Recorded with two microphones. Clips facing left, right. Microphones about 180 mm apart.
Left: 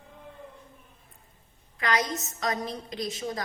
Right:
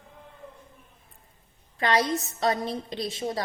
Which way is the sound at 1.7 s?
30° right (ahead or behind).